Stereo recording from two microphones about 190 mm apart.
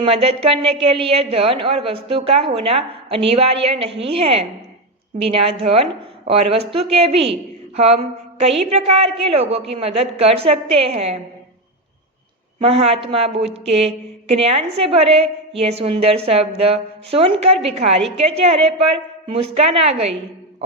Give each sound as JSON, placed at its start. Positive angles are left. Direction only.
{"t": 0.0, "sound": "a woman's voice", "side_deg": -30}
{"t": 12.5, "sound": "a woman's voice", "side_deg": -30}